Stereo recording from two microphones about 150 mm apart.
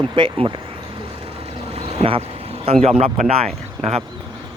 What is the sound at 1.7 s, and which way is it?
Boat, 40° right (ahead or behind).